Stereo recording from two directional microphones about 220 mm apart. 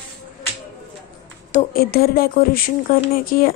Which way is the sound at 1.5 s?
35° left (ahead or behind).